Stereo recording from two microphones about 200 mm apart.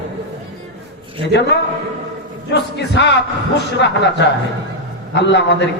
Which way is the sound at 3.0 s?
60° left (ahead or behind).